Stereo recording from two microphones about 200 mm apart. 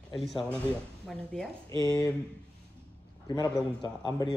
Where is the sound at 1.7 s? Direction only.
20° left (ahead or behind).